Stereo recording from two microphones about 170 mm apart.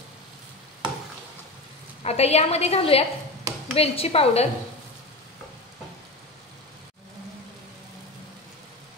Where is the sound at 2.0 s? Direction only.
40° left (ahead or behind).